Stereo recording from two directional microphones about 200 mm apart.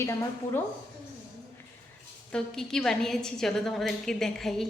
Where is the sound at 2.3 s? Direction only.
Centre (ahead or behind).